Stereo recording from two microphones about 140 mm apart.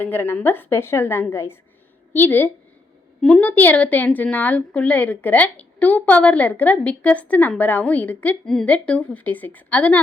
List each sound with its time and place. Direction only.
0.0 s a woman's voice: 15° left (ahead or behind)